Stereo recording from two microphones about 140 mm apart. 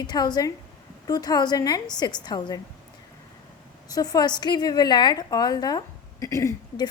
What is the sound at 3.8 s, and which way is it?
A woman's voice, 30° left (ahead or behind).